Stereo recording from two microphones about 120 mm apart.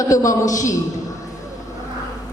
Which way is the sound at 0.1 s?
30° left (ahead or behind).